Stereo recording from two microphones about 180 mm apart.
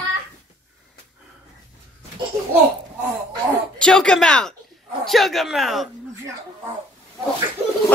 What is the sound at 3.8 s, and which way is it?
Speech, 5° left (ahead or behind).